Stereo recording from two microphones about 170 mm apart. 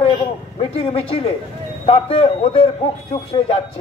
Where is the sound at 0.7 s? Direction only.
35° left (ahead or behind).